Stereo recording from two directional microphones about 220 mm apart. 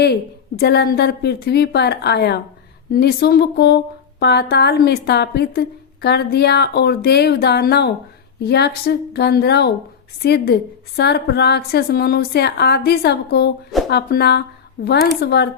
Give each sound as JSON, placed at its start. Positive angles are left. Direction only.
{"t": 0.0, "sound": "a woman's voice", "side_deg": 45}